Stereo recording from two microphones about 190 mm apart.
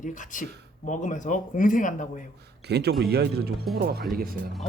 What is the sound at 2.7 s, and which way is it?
Speech, 60° right (ahead or behind).